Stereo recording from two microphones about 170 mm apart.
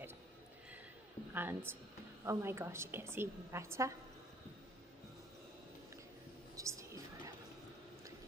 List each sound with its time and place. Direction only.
1.3 s a woman's voice: 10° right (ahead or behind)
6.5 s whispering: 20° right (ahead or behind)